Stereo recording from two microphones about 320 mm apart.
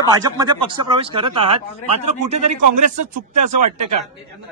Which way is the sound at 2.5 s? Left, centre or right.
Right.